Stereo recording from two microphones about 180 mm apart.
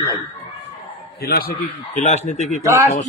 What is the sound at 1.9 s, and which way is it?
Speech, 40° left (ahead or behind).